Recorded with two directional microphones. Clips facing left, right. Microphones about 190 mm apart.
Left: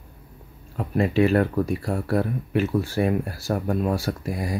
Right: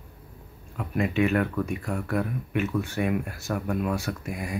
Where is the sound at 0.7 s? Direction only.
35° left (ahead or behind).